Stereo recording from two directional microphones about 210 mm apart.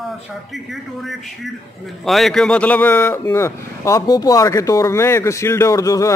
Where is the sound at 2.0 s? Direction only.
Centre (ahead or behind).